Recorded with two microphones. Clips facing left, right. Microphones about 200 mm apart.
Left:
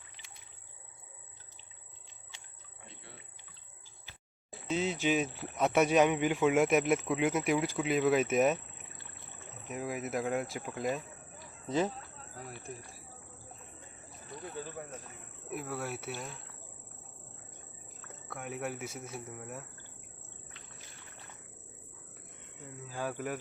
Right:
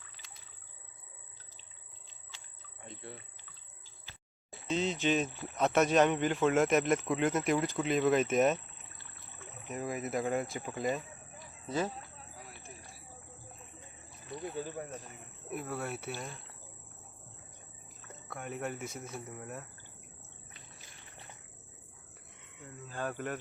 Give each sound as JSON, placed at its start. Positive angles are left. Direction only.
{"t": 4.7, "sound": "speech", "side_deg": 10}
{"t": 9.6, "sound": "speech", "side_deg": 5}
{"t": 11.6, "sound": "speech", "side_deg": 15}
{"t": 12.5, "sound": "a sound", "side_deg": 45}
{"t": 15.4, "sound": "speech", "side_deg": 0}
{"t": 18.3, "sound": "speech", "side_deg": 5}
{"t": 22.7, "sound": "cricket", "side_deg": 10}